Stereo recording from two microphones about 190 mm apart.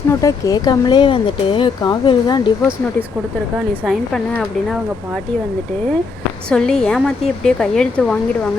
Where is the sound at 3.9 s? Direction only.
Centre (ahead or behind).